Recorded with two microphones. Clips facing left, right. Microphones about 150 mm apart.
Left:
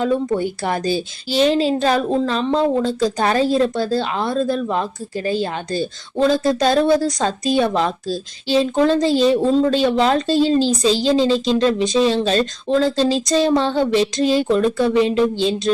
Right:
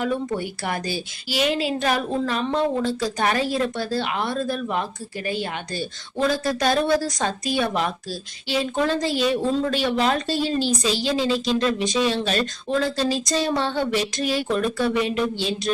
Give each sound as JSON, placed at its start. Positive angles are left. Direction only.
{"t": 0.0, "sound": "a woman's voice", "side_deg": 25}